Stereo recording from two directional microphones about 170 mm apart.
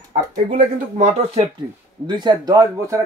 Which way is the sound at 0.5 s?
40° right (ahead or behind).